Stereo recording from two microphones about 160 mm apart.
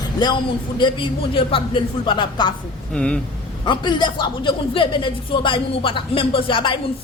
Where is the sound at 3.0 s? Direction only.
5° left (ahead or behind).